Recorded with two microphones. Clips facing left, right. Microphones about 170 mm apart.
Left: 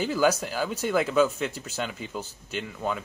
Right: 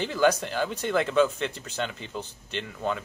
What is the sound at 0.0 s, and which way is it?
Speech, 5° left (ahead or behind).